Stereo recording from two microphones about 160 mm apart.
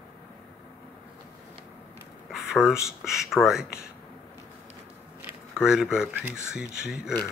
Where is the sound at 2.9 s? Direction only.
5° right (ahead or behind).